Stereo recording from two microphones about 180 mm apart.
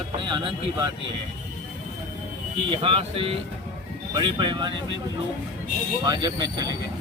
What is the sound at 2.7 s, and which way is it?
Speech, 30° right (ahead or behind).